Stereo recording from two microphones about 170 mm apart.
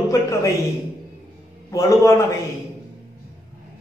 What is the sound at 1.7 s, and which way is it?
Speech, 20° left (ahead or behind).